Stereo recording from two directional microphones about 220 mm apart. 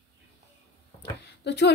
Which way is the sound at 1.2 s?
50° left (ahead or behind).